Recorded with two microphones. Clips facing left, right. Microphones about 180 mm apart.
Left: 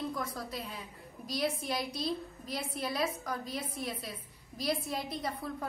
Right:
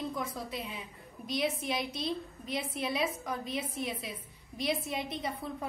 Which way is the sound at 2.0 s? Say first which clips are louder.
Even; 20° right (ahead or behind).